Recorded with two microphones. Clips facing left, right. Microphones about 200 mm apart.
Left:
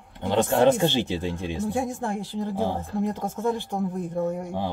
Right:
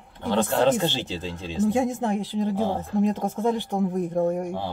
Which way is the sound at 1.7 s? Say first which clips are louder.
Right 5 dB; 20° right (ahead or behind).